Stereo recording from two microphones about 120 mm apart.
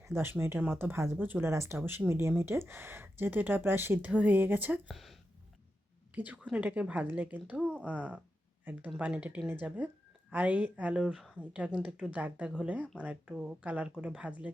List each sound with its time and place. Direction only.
0.0 s speech: 20° right (ahead or behind)
4.9 s speech: centre (ahead or behind)
6.1 s speech: 10° right (ahead or behind)